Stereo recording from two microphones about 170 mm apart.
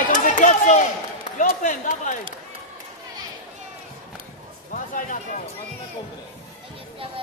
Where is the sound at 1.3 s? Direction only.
50° left (ahead or behind).